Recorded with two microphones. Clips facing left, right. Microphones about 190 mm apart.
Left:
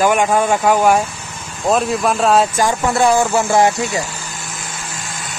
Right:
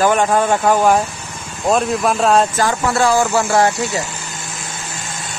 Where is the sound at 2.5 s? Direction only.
20° left (ahead or behind).